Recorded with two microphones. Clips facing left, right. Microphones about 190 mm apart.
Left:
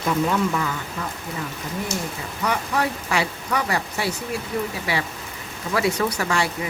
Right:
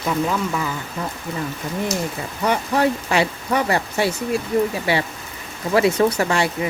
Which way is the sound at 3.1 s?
25° right (ahead or behind).